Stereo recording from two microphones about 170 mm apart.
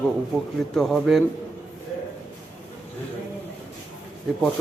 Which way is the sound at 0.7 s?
5° left (ahead or behind).